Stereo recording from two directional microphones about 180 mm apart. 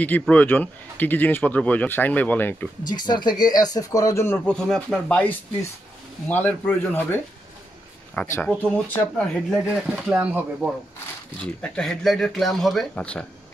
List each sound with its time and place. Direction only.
0.2 s speech: 10° left (ahead or behind)
2.8 s speech: 25° left (ahead or behind); by 5.2 s 5° left (ahead or behind)
6.2 s speech: 10° left (ahead or behind)
9.5 s speech: 5° right (ahead or behind)
11.4 s speech: 5° left (ahead or behind)